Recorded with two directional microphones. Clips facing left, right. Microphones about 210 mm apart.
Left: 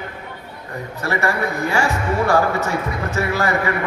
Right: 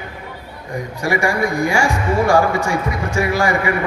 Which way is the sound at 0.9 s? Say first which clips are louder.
Right 3 dB; 10° right (ahead or behind).